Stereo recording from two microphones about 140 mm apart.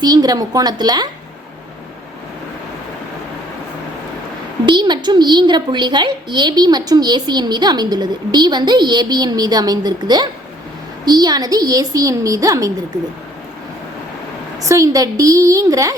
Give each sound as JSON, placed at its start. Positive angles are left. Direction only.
{"t": 0.0, "sound": "a woman's voice", "side_deg": -30}
{"t": 4.6, "sound": "a woman's voice", "side_deg": -35}
{"t": 14.6, "sound": "a woman's voice", "side_deg": -25}